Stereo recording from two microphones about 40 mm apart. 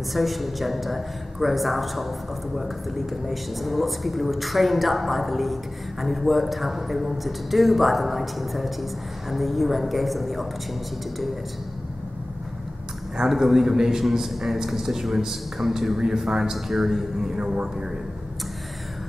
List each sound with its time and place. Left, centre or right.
0.1 s a woman's voice: centre
13.2 s a man's voice: centre